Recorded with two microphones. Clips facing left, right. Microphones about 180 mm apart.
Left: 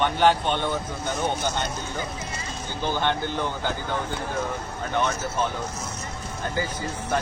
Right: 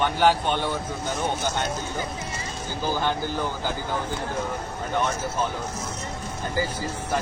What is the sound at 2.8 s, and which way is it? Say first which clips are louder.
Speech: even; 5° right (ahead or behind).